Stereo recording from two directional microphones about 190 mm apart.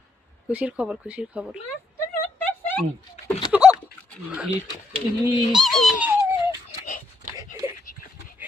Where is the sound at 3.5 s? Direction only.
5° right (ahead or behind).